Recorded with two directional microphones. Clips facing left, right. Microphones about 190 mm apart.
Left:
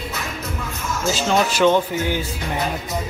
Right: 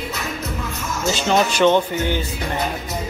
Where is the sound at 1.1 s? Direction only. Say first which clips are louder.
Right 1 dB; 5° left (ahead or behind).